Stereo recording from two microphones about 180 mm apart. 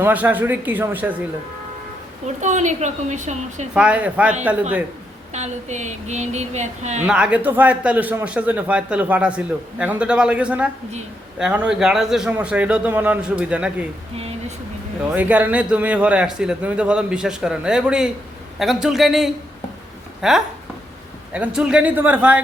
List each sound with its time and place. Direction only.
0.0 s a man's voice: 10° right (ahead or behind)
2.2 s a woman's voice: 40° right (ahead or behind)
3.8 s a man's voice: 5° right (ahead or behind)
5.3 s a woman's voice: 40° right (ahead or behind)
7.0 s a man's voice: 5° right (ahead or behind)
15.1 s a man's voice: 10° right (ahead or behind)